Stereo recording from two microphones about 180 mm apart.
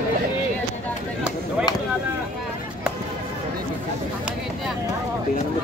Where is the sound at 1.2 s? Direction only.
5° right (ahead or behind).